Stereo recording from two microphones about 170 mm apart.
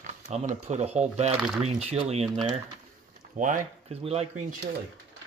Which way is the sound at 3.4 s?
50° right (ahead or behind).